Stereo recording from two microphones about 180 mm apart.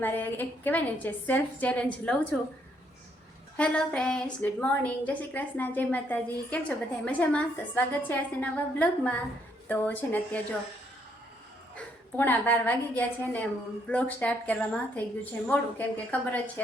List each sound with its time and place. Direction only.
0.0 s a woman's voice: 10° left (ahead or behind)
3.6 s a woman's voice: 5° left (ahead or behind)
11.8 s a woman's voice: 10° left (ahead or behind)